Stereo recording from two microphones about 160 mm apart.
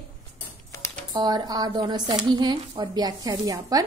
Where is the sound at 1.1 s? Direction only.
25° right (ahead or behind).